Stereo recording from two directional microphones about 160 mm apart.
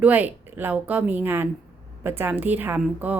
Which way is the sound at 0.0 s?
10° right (ahead or behind).